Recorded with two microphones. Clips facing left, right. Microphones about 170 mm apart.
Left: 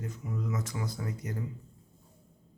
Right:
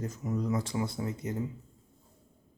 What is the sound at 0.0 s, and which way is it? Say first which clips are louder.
Speech: right 4 dB; 40° right (ahead or behind).